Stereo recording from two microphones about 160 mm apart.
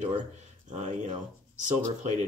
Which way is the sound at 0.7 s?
45° right (ahead or behind).